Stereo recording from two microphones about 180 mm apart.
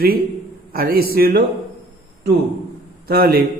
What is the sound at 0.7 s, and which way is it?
Speech, 60° right (ahead or behind).